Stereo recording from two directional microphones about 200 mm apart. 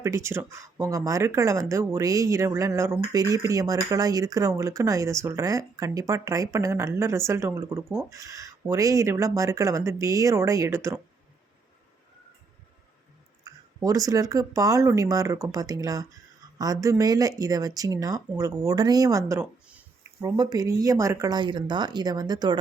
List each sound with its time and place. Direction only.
0.0 s speech: 15° right (ahead or behind)
13.4 s speech: 15° right (ahead or behind)
20.2 s speech: 20° right (ahead or behind)